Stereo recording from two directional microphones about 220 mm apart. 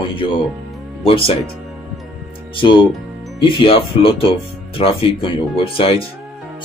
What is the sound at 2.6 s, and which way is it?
Speech, 20° left (ahead or behind).